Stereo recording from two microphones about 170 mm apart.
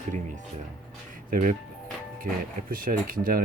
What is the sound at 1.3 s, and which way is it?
Speech, 55° right (ahead or behind).